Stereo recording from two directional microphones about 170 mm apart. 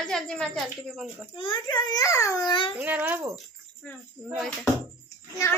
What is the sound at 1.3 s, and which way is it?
A child's voice, 30° left (ahead or behind).